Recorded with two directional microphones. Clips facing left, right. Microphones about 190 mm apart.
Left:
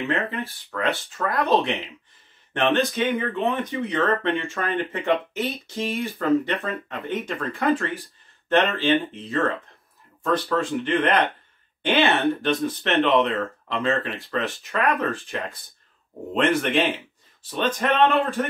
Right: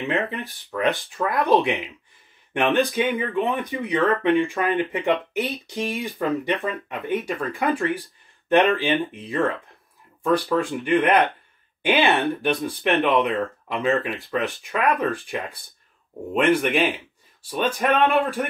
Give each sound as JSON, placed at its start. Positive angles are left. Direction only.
{"t": 0.0, "sound": "speech", "side_deg": -15}